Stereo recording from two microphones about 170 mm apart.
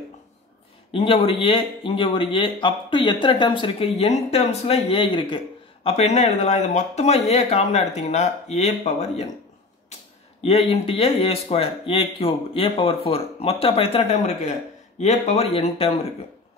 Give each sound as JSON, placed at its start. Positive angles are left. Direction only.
{"t": 0.9, "sound": "speech", "side_deg": 30}
{"t": 5.9, "sound": "speech", "side_deg": 40}
{"t": 10.7, "sound": "speech", "side_deg": 30}